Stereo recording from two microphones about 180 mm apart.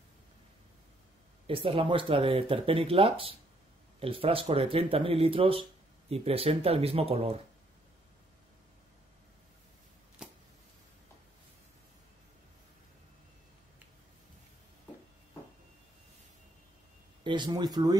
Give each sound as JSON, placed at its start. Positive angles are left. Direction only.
{"t": 1.5, "sound": "speech", "side_deg": -30}
{"t": 17.2, "sound": "speech", "side_deg": -25}